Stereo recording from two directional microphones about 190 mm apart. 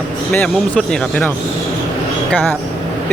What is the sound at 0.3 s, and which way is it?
Speech, 5° left (ahead or behind).